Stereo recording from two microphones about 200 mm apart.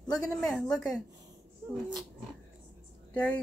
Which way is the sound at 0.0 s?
20° left (ahead or behind).